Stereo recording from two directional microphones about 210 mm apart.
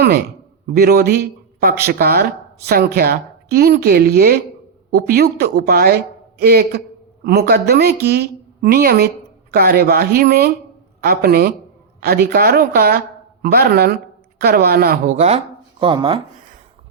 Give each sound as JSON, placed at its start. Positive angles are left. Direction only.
{"t": 0.0, "sound": "a man's voice", "side_deg": -50}
{"t": 15.1, "sound": "speech", "side_deg": -30}